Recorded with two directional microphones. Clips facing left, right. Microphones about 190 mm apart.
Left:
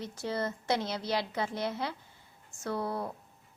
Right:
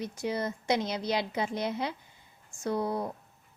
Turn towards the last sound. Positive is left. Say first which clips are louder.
# right 3 dB
turn(degrees=-15)  # may be behind; listen again after turning